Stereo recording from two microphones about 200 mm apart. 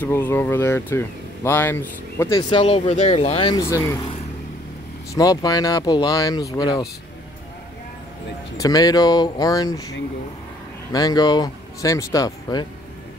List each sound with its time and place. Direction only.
0.0 s speech: 10° left (ahead or behind)
5.1 s speech: 20° left (ahead or behind)
8.5 s speech: 20° left (ahead or behind)